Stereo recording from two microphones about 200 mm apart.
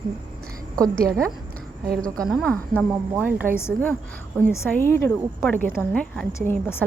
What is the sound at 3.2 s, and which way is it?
Speech, 10° right (ahead or behind).